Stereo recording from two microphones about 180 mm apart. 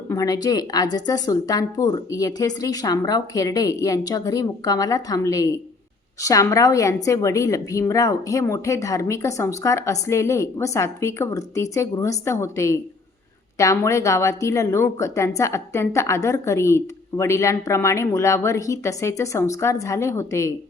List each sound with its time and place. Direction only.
0.1 s a woman's voice: 20° left (ahead or behind)